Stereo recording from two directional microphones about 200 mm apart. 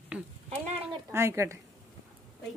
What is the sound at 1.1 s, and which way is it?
Speech, 15° right (ahead or behind).